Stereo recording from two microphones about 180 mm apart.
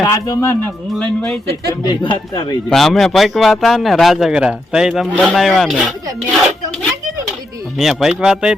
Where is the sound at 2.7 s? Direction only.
Centre (ahead or behind).